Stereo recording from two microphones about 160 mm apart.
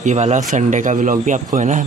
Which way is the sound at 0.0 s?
45° right (ahead or behind).